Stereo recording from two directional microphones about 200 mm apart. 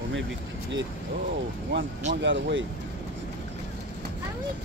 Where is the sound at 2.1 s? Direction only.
65° right (ahead or behind).